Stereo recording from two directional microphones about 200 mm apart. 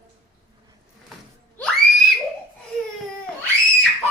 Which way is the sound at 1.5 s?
Centre (ahead or behind).